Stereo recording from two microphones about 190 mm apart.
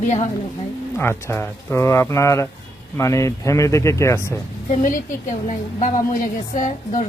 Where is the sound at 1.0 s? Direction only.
10° left (ahead or behind).